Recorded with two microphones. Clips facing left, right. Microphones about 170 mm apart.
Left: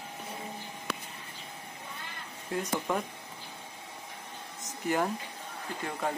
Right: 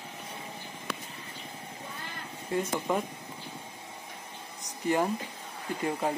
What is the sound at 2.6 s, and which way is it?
Speech, 10° right (ahead or behind).